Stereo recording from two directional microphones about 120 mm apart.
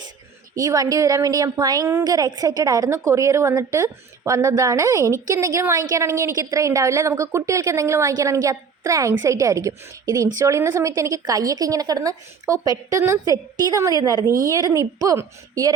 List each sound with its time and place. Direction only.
0.5 s a woman's voice: 30° right (ahead or behind)